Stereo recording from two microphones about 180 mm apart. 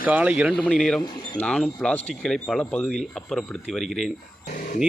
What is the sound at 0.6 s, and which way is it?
Speech, 5° left (ahead or behind).